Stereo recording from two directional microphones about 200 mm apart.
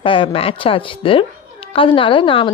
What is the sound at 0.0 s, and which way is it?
Speech, 25° left (ahead or behind).